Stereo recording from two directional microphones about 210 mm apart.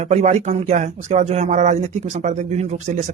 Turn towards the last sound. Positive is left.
turn(degrees=-35)  # may be behind; listen again after turning